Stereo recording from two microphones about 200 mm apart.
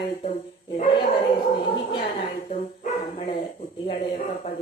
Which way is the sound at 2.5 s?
35° left (ahead or behind).